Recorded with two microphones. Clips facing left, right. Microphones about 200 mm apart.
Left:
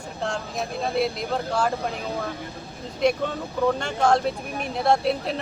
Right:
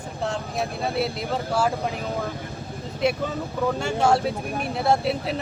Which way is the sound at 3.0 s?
5° right (ahead or behind).